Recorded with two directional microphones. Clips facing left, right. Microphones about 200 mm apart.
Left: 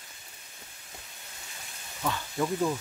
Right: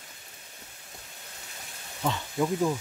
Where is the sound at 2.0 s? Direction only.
20° right (ahead or behind).